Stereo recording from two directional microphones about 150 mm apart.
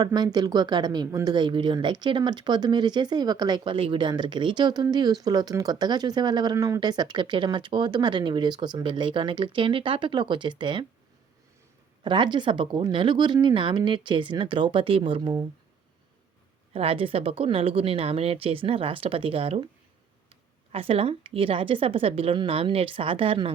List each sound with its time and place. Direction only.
0.0 s a woman's voice: 25° right (ahead or behind)
12.0 s speech: 30° right (ahead or behind)
16.7 s speech: 40° right (ahead or behind)